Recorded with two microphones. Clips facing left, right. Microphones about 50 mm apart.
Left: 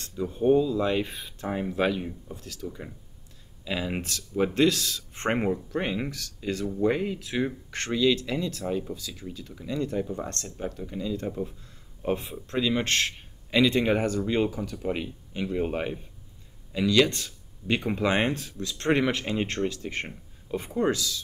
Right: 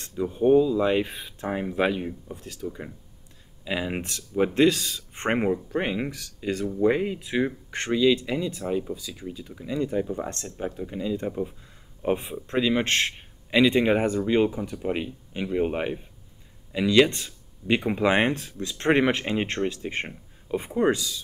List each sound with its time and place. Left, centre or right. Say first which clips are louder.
0.2 s speech: right 3 dB; centre